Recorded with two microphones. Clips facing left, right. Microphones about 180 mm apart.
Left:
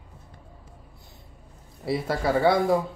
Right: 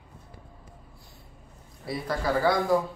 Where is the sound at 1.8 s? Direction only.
30° left (ahead or behind).